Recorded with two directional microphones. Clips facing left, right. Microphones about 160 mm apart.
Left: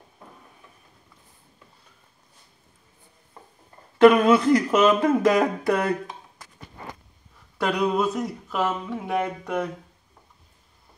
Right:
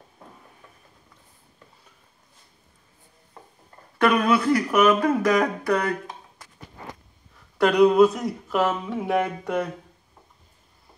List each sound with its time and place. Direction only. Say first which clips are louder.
4.0 s speech: left 5 dB; 20° left (ahead or behind)
7.5 s speech: right 7 dB; centre (ahead or behind)